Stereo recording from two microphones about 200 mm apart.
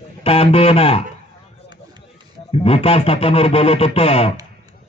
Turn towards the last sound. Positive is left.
turn(degrees=30)  # may be behind; listen again after turning